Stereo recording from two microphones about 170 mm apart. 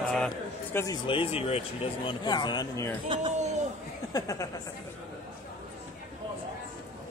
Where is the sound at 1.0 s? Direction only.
35° left (ahead or behind).